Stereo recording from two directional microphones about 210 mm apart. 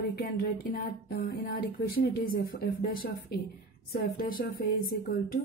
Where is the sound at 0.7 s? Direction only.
45° left (ahead or behind).